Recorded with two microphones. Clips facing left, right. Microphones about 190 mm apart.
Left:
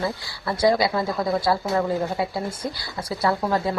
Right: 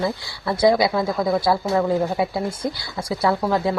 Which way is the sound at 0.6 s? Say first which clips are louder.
Right 3 dB; 10° right (ahead or behind).